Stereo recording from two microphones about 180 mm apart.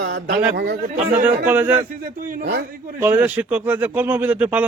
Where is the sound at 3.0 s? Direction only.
10° right (ahead or behind).